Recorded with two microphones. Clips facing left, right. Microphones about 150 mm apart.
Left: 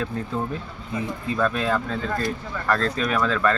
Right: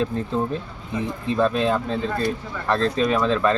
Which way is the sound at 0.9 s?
25° right (ahead or behind).